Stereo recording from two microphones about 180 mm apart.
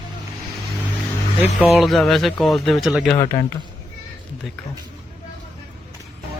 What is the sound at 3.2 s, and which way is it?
Speech, 20° left (ahead or behind).